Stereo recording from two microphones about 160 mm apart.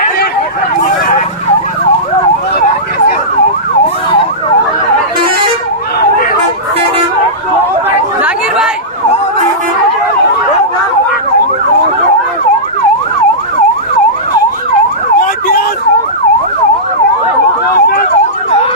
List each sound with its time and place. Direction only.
8.2 s chatter: 5° right (ahead or behind)
15.2 s emergency vehicle: 65° left (ahead or behind)
17.7 s emergency vehicle: 70° left (ahead or behind)